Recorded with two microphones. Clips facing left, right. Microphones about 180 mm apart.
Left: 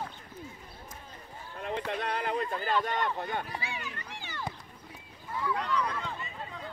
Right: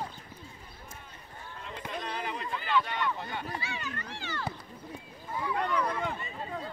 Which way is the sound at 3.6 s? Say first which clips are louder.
Right 1 dB; 15° left (ahead or behind).